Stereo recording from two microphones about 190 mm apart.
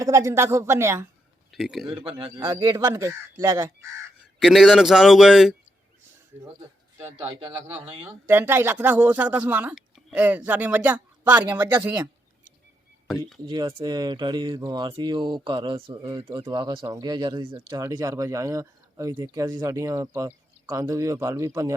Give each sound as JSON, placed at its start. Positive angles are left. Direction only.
{"t": 0.0, "sound": "speech", "side_deg": -15}
{"t": 1.5, "sound": "a man's voice", "side_deg": 0}
{"t": 1.9, "sound": "speech", "side_deg": -30}
{"t": 2.4, "sound": "speech", "side_deg": -15}
{"t": 4.4, "sound": "a man's voice", "side_deg": 0}
{"t": 7.9, "sound": "speech", "side_deg": -20}
{"t": 13.1, "sound": "a man's voice", "side_deg": 0}
{"t": 13.5, "sound": "speech", "side_deg": -25}